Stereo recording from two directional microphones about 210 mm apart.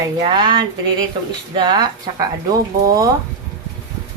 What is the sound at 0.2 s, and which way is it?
Speech, 20° right (ahead or behind).